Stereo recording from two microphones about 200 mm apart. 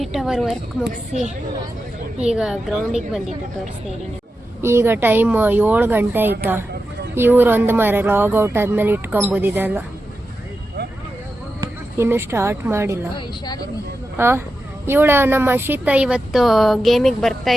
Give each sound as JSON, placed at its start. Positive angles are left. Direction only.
{"t": 0.0, "sound": "speech", "side_deg": 0}
{"t": 2.2, "sound": "speech", "side_deg": -5}
{"t": 4.6, "sound": "speech", "side_deg": -10}
{"t": 11.6, "sound": "speech", "side_deg": -10}
{"t": 13.1, "sound": "speech", "side_deg": 20}
{"t": 14.2, "sound": "speech", "side_deg": -10}